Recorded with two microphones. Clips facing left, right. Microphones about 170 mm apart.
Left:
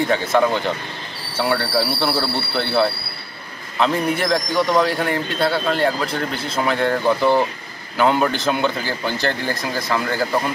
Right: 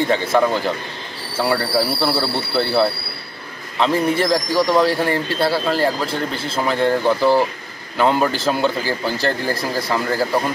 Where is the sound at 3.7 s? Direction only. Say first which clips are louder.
Right 2 dB; centre (ahead or behind).